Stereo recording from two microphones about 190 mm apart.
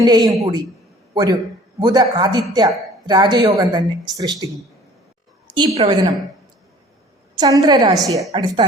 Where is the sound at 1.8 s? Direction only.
20° right (ahead or behind).